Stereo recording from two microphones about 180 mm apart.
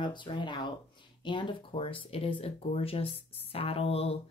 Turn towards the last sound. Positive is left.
turn(degrees=35)  # may be behind; listen again after turning